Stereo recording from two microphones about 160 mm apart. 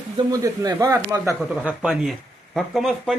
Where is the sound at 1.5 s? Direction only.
5° right (ahead or behind).